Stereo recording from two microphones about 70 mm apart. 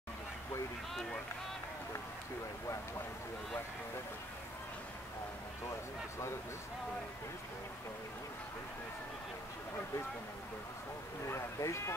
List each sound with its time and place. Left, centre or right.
11.2 s speech: left